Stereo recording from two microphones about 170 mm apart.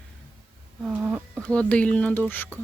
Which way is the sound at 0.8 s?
10° right (ahead or behind).